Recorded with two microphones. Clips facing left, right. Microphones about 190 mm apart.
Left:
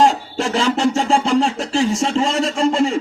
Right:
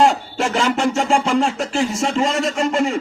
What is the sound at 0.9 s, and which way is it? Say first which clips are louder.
Speech: left 1 dB; 35° left (ahead or behind).